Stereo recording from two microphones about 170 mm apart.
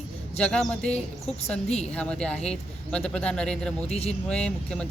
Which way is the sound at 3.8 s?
40° left (ahead or behind).